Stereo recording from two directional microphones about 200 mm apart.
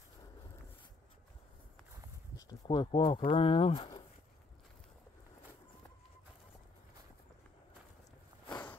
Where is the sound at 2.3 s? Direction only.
20° left (ahead or behind).